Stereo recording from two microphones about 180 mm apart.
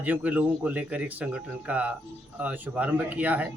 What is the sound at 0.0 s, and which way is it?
A man's voice, 10° right (ahead or behind).